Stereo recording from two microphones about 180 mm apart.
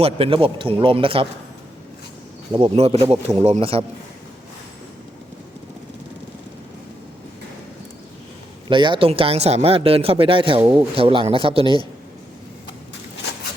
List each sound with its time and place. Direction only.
0.0 s a man's voice: 30° right (ahead or behind)
2.5 s a man's voice: 25° right (ahead or behind)
3.1 s speech: 35° right (ahead or behind)
8.7 s speech: 25° right (ahead or behind)